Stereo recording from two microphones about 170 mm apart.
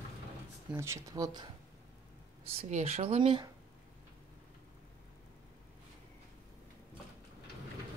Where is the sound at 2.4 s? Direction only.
40° right (ahead or behind).